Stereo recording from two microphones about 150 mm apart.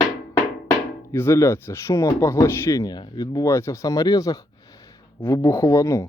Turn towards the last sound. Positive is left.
turn(degrees=20)  # may be behind; listen again after turning